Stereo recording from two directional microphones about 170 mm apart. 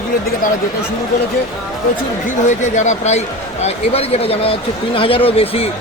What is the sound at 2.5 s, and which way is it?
Speech, 45° left (ahead or behind).